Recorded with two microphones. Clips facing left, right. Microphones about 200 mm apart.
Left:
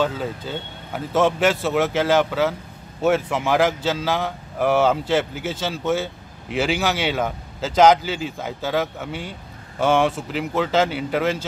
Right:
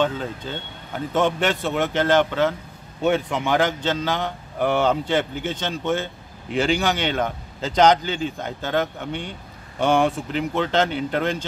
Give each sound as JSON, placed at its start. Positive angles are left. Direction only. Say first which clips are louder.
{"t": 0.0, "sound": "speech", "louder": "even", "side_deg": 5}